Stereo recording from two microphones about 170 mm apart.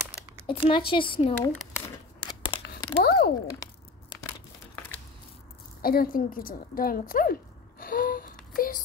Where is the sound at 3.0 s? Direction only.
70° left (ahead or behind).